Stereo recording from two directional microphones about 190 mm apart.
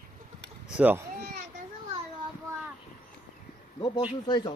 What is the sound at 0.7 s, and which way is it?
Speech, 10° right (ahead or behind).